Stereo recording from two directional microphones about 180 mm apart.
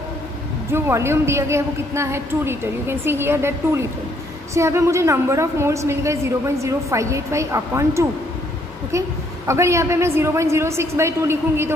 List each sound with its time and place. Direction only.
0.7 s a woman's voice: 15° right (ahead or behind)